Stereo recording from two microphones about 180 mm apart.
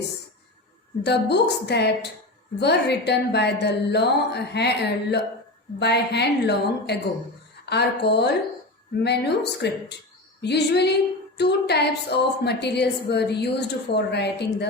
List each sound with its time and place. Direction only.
1.0 s a woman's voice: 70° left (ahead or behind)